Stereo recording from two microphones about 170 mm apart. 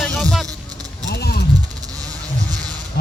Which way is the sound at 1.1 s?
65° left (ahead or behind).